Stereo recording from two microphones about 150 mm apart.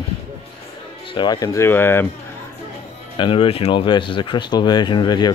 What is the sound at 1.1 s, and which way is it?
Speech, 25° left (ahead or behind).